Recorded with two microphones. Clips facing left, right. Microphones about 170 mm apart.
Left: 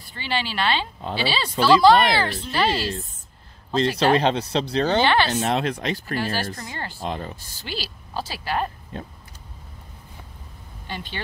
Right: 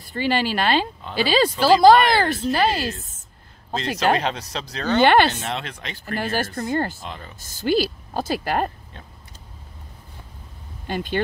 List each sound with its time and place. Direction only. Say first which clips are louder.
0.1 s speech: right 6 dB; 45° right (ahead or behind)
4.2 s speech: left 5 dB; 30° left (ahead or behind)
5.0 s speech: right 5 dB; 55° right (ahead or behind)
5.4 s speech: left 7 dB; 40° left (ahead or behind)
6.0 s speech: right 7 dB; 50° right (ahead or behind)
7.0 s speech: left 7 dB; 35° left (ahead or behind)
7.3 s speech: right 13 dB; 45° right (ahead or behind)
10.9 s speech: right 8 dB; 45° right (ahead or behind)